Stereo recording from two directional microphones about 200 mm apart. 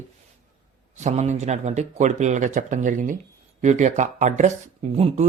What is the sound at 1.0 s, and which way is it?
Speech, 35° right (ahead or behind).